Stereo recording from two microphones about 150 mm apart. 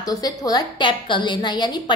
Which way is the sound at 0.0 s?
25° left (ahead or behind).